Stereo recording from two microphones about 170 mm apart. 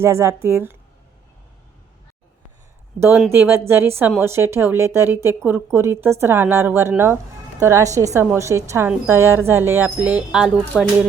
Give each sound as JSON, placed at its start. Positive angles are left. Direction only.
{"t": 0.0, "sound": "speech", "side_deg": -15}
{"t": 3.3, "sound": "speech", "side_deg": -15}